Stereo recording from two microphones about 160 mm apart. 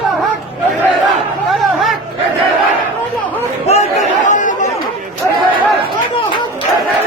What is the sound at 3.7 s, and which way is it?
Chatter, 45° left (ahead or behind).